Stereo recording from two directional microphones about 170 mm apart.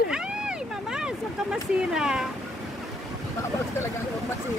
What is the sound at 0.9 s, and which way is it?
Waves, 5° right (ahead or behind).